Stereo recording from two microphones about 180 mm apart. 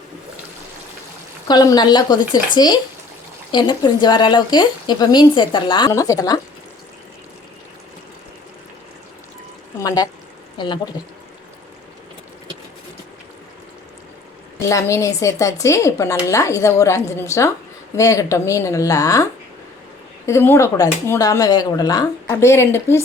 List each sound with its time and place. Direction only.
1.5 s speech: 25° left (ahead or behind)
9.8 s speech: 20° left (ahead or behind)
14.7 s speech: 15° left (ahead or behind)